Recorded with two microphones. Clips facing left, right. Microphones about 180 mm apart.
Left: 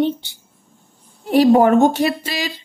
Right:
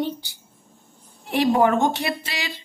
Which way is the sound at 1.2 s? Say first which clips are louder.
Left 7 dB; 40° left (ahead or behind).